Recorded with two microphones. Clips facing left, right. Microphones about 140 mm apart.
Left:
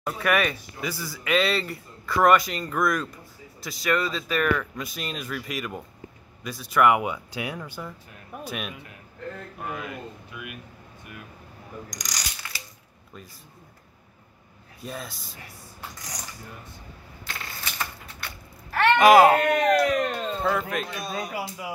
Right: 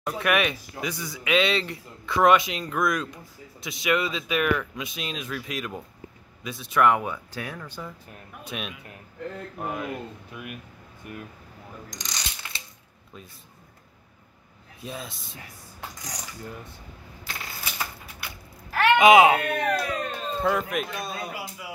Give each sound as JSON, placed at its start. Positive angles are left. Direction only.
{"t": 0.0, "sound": "speech", "side_deg": -5}
{"t": 7.0, "sound": "speech", "side_deg": 15}
{"t": 11.9, "sound": "ratchet", "side_deg": -25}
{"t": 14.8, "sound": "speech", "side_deg": 0}
{"t": 17.6, "sound": "typewriter", "side_deg": -10}
{"t": 19.4, "sound": "speech", "side_deg": 90}
{"t": 20.4, "sound": "speech", "side_deg": -5}
{"t": 21.1, "sound": "speech", "side_deg": 45}